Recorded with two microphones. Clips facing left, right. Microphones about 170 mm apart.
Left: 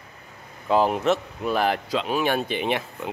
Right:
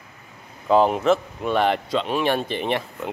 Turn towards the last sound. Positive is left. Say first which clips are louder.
# right 1 dB
turn(degrees=0)  # may be behind; listen again after turning